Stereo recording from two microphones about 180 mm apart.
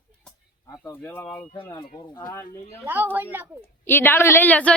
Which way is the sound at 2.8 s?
10° right (ahead or behind).